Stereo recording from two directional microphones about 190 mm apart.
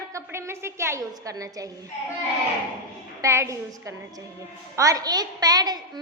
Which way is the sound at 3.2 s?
15° right (ahead or behind).